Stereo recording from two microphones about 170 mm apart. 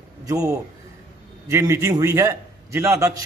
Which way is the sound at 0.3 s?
20° right (ahead or behind).